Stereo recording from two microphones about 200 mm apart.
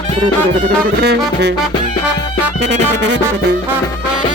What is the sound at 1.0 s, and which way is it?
Music, 55° right (ahead or behind).